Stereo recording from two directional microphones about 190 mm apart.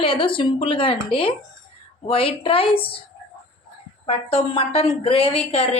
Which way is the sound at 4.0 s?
30° left (ahead or behind).